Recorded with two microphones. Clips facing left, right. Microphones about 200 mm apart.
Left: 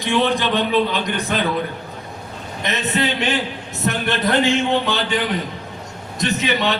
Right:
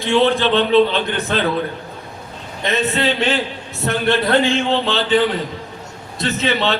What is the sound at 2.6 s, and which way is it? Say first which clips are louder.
A man's voice: right 3 dB; 15° left (ahead or behind).